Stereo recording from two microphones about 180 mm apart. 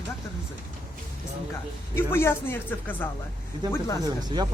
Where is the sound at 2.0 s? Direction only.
15° left (ahead or behind).